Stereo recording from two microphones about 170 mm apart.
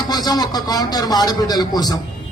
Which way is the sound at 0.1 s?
25° left (ahead or behind).